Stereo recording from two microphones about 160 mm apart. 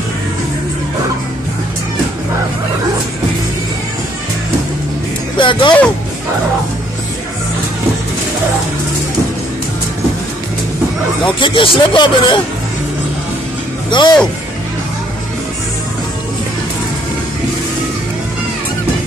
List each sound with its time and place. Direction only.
5.4 s speech: 30° left (ahead or behind)
11.3 s speech: 30° left (ahead or behind)
13.8 s speech: 30° left (ahead or behind)